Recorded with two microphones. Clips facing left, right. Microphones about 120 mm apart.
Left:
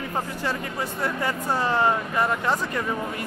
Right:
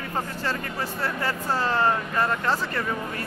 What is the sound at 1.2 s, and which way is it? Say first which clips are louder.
Speech: left 1 dB; 15° left (ahead or behind).